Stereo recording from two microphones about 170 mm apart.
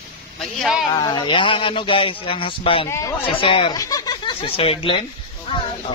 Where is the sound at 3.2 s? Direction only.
30° left (ahead or behind).